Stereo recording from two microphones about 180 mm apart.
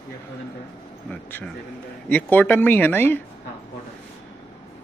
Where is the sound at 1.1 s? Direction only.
10° left (ahead or behind).